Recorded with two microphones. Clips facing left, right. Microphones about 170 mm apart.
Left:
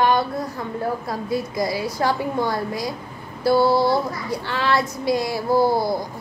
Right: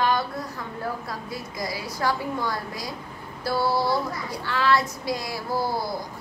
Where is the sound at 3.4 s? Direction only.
25° left (ahead or behind).